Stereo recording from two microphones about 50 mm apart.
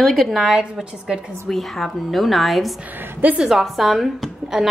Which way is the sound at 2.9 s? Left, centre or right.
Right.